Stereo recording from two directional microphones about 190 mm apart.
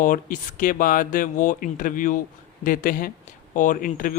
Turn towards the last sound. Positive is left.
turn(degrees=45)  # may be behind; listen again after turning